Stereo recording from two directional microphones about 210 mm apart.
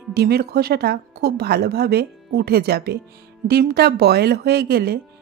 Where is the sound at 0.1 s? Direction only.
50° right (ahead or behind).